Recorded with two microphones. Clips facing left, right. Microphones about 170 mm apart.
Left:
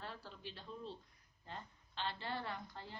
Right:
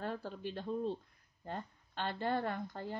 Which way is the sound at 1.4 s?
50° right (ahead or behind).